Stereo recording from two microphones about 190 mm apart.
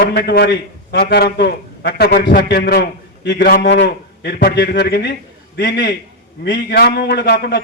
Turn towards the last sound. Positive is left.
turn(degrees=60)  # may be behind; listen again after turning